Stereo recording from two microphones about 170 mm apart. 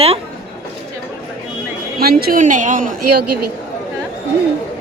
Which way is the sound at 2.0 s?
60° right (ahead or behind).